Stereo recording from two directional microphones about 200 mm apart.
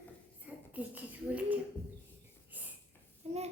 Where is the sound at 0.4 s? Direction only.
10° right (ahead or behind).